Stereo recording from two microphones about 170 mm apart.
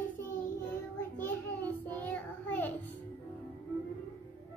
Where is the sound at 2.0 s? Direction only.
10° left (ahead or behind).